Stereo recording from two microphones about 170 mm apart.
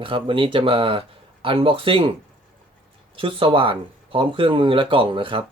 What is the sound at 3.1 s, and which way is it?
Speech, 30° right (ahead or behind).